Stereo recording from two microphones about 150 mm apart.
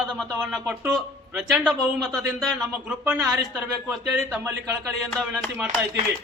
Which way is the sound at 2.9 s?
15° right (ahead or behind).